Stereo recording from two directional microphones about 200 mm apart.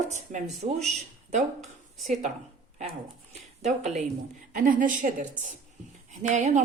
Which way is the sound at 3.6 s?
35° right (ahead or behind).